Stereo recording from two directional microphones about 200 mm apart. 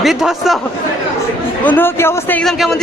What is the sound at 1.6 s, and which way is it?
A man's voice, 10° left (ahead or behind).